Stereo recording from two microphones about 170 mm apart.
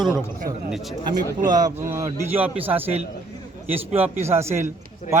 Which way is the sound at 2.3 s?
10° right (ahead or behind).